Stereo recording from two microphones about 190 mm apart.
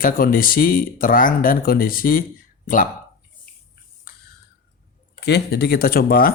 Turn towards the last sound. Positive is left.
turn(degrees=50)  # may be behind; listen again after turning